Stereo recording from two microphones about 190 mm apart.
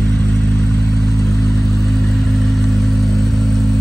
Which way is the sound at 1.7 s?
Centre (ahead or behind).